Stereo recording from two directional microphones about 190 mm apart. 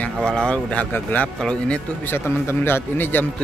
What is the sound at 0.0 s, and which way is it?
Speech, 5° left (ahead or behind).